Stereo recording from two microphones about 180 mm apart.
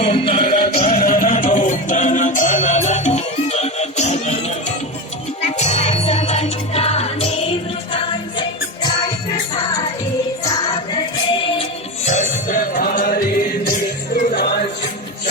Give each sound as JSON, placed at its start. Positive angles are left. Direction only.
{"t": 0.0, "sound": "music", "side_deg": 35}
{"t": 1.0, "sound": "music", "side_deg": 45}
{"t": 5.5, "sound": "music", "side_deg": 35}
{"t": 12.0, "sound": "music", "side_deg": 45}